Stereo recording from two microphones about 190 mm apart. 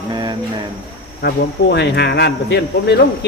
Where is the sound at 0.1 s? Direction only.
25° right (ahead or behind).